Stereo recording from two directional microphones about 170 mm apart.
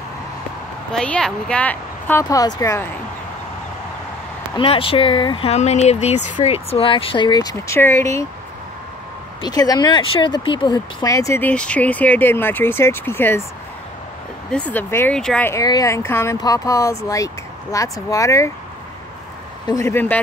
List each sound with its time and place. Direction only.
0.9 s speech: 5° left (ahead or behind)
4.6 s speech: 30° left (ahead or behind)
9.4 s speech: 20° left (ahead or behind)
14.5 s speech: 10° left (ahead or behind)
15.5 s speech: 20° left (ahead or behind)
19.6 s speech: 20° left (ahead or behind)